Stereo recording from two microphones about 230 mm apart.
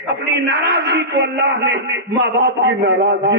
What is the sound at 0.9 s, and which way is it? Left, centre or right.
A man's voice, right.